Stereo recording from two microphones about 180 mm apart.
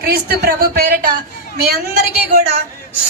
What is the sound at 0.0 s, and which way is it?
A woman's voice, 60° right (ahead or behind).